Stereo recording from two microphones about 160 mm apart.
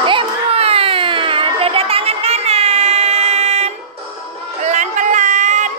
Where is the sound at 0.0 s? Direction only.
35° right (ahead or behind).